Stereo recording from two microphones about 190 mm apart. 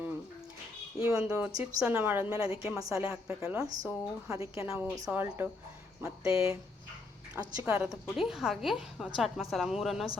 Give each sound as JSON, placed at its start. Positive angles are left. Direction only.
{"t": 1.3, "sound": "a woman's voice", "side_deg": -5}
{"t": 7.7, "sound": "a woman's voice", "side_deg": -5}